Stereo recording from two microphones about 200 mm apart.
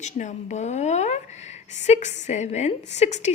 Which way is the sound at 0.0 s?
40° left (ahead or behind).